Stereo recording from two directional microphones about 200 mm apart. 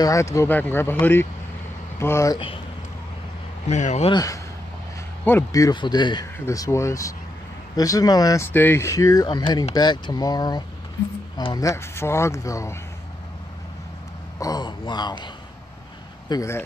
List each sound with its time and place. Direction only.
0.0 s speech: 15° left (ahead or behind)
3.6 s speech: 35° left (ahead or behind)
4.1 s speech: 15° left (ahead or behind)
14.4 s speech: 20° left (ahead or behind)
16.3 s speech: 15° left (ahead or behind)